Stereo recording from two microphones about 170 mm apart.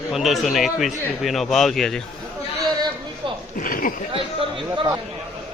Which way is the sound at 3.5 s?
55° left (ahead or behind).